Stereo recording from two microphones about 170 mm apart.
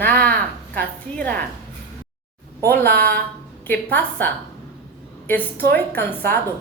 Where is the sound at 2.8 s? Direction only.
65° right (ahead or behind).